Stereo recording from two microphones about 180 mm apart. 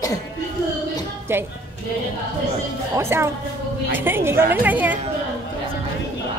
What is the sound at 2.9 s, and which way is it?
A woman's voice, 15° right (ahead or behind).